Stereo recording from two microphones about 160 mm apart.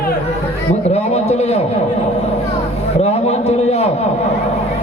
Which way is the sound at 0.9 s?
45° left (ahead or behind).